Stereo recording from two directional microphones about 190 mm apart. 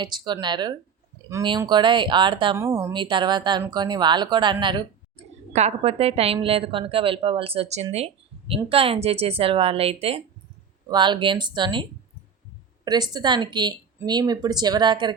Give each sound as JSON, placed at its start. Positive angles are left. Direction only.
{"t": 0.0, "sound": "speech", "side_deg": -25}
{"t": 2.6, "sound": "speech", "side_deg": -15}
{"t": 3.0, "sound": "a woman's voice", "side_deg": -25}
{"t": 7.9, "sound": "a sound", "side_deg": -30}
{"t": 8.7, "sound": "a woman's voice", "side_deg": -30}